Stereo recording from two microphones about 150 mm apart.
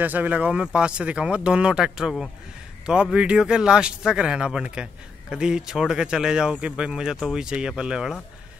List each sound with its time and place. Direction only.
0.0 s speech: 10° right (ahead or behind)